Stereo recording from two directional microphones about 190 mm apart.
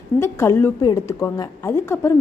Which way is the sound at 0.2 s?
15° left (ahead or behind).